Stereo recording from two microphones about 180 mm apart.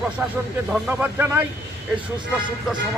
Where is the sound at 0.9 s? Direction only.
15° right (ahead or behind).